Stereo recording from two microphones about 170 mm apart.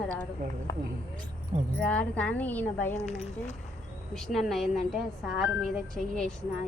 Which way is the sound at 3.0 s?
40° left (ahead or behind).